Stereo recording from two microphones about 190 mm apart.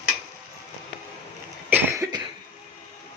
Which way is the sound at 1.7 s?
15° right (ahead or behind).